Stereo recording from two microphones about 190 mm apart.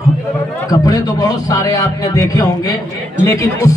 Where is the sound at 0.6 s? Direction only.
20° left (ahead or behind).